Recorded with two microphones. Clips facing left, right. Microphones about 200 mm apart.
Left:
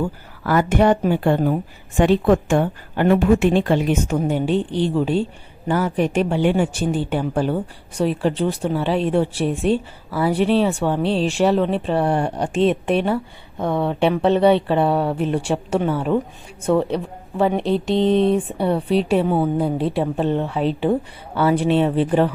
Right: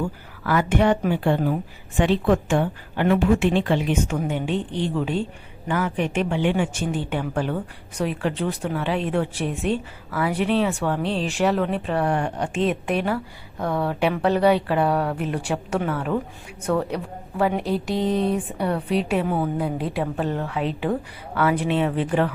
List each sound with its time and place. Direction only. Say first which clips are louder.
0.4 s a woman's voice: left 3 dB; 40° left (ahead or behind)